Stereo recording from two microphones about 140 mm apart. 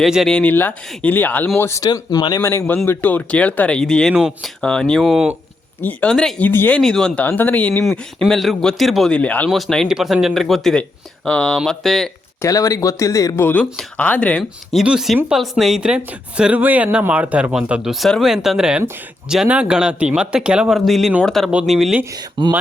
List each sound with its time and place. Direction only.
0.0 s speech: centre (ahead or behind)
7.9 s speech: centre (ahead or behind)
12.4 s speech: 25° left (ahead or behind); by 22.0 s centre (ahead or behind)
22.4 s speech: 35° right (ahead or behind)